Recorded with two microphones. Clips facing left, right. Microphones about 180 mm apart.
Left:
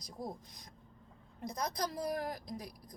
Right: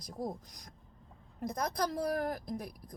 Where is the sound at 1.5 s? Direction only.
50° right (ahead or behind).